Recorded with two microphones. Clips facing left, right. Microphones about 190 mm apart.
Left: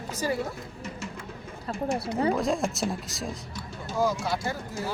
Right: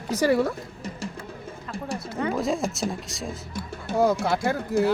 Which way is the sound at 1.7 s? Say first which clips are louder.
Left 3 dB; 35° left (ahead or behind).